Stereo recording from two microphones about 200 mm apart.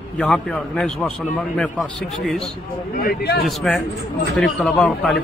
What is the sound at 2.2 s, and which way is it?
Speech, centre (ahead or behind).